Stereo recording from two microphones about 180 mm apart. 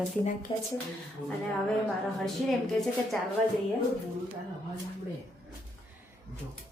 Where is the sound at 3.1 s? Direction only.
Centre (ahead or behind).